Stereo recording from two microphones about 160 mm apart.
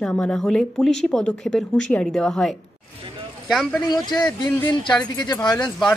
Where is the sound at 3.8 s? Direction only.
25° left (ahead or behind).